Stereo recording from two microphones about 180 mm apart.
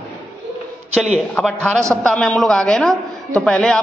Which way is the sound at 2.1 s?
5° left (ahead or behind).